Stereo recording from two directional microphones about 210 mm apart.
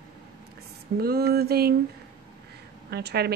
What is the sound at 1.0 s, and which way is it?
Speech, 45° right (ahead or behind).